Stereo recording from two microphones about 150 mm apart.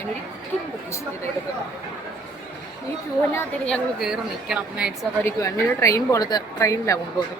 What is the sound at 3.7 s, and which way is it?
A woman's voice, 5° right (ahead or behind).